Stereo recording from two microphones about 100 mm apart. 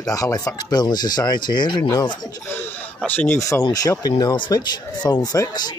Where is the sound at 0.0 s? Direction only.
35° left (ahead or behind).